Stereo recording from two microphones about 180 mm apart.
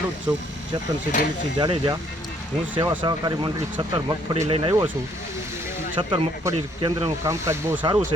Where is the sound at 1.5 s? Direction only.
25° right (ahead or behind).